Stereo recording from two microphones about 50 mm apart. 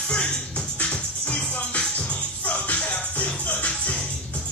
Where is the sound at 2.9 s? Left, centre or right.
Left.